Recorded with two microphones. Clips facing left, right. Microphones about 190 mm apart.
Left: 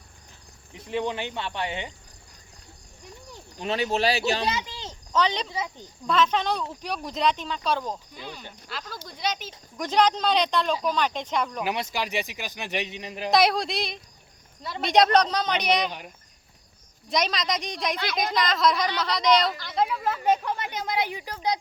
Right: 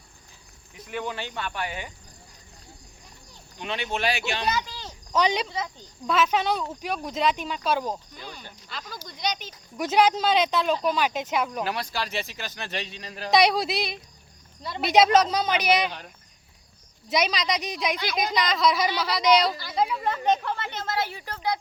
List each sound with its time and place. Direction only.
0.7 s speech: 25° left (ahead or behind)
3.6 s speech: 40° left (ahead or behind)
5.1 s speech: 10° right (ahead or behind)
5.5 s speech: 15° left (ahead or behind)
6.1 s a woman's voice: 5° right (ahead or behind)
8.1 s a woman's voice: 5° left (ahead or behind)
9.7 s a woman's voice: 5° right (ahead or behind)
11.6 s speech: 20° left (ahead or behind)
13.3 s a woman's voice: centre (ahead or behind)
17.1 s a woman's voice: centre (ahead or behind); by 21.6 s 15° left (ahead or behind)